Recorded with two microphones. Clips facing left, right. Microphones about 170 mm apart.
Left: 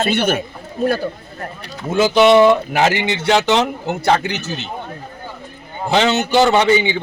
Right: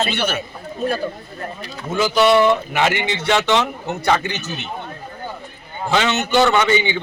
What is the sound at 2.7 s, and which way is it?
Speech, 40° left (ahead or behind).